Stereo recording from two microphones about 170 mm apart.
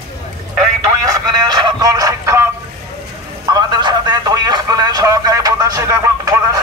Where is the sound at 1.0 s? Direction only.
20° right (ahead or behind).